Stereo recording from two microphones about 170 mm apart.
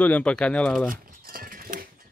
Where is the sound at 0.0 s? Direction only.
5° left (ahead or behind).